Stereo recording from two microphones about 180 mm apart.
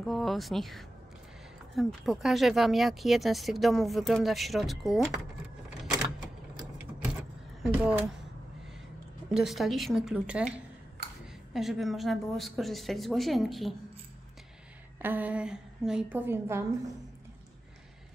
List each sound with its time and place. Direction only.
0.0 s speech: centre (ahead or behind)
7.6 s a woman's voice: 5° right (ahead or behind)
9.3 s speech: centre (ahead or behind)
11.5 s speech: centre (ahead or behind)
15.0 s a woman's voice: 10° right (ahead or behind)